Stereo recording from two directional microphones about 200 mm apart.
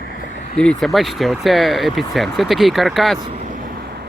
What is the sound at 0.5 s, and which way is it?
Speech, 5° left (ahead or behind).